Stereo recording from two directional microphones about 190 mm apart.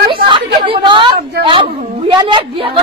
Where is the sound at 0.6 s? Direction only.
25° right (ahead or behind).